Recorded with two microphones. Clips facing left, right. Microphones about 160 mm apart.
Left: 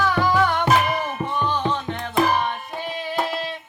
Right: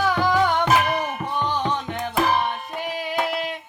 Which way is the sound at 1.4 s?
15° right (ahead or behind).